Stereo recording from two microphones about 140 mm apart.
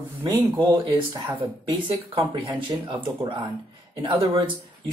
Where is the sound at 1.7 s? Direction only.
35° right (ahead or behind).